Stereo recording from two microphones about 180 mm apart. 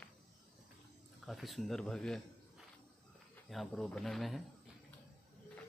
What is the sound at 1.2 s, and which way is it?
Speech, centre (ahead or behind).